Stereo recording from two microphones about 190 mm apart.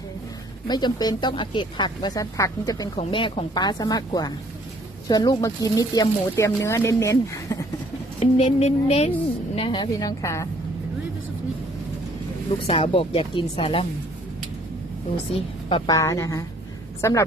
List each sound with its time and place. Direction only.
0.7 s speech: 20° left (ahead or behind)
8.2 s a woman's voice: 30° left (ahead or behind)
12.6 s speech: 30° left (ahead or behind)
15.4 s a woman's voice: 25° left (ahead or behind)
16.0 s speech: 15° left (ahead or behind)